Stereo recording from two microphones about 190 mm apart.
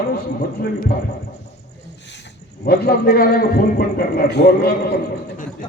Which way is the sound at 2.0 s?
65° left (ahead or behind).